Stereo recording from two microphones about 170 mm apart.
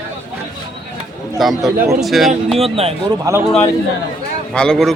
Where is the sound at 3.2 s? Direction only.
15° right (ahead or behind).